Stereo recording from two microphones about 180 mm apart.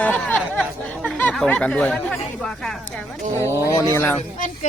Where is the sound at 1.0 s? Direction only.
5° left (ahead or behind).